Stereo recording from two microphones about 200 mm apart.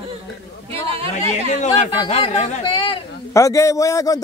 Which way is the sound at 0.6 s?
30° right (ahead or behind).